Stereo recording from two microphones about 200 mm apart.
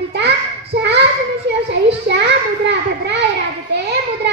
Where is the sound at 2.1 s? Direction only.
60° right (ahead or behind).